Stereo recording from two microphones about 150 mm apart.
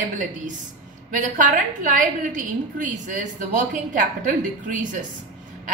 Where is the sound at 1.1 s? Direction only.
65° right (ahead or behind).